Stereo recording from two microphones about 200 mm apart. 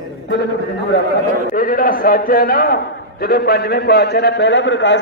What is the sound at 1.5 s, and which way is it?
A man's voice, 45° left (ahead or behind).